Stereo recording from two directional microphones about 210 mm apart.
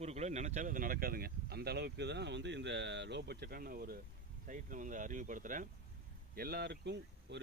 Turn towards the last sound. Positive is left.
turn(degrees=-55)  # may be behind; listen again after turning